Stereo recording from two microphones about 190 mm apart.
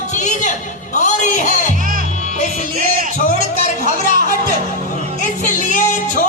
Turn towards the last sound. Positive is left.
turn(degrees=45)  # may be behind; listen again after turning